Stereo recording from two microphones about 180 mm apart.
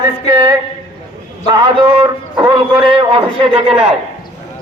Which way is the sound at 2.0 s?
25° right (ahead or behind).